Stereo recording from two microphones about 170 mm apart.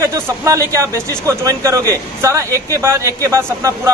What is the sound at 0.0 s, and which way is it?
Speech, 20° right (ahead or behind).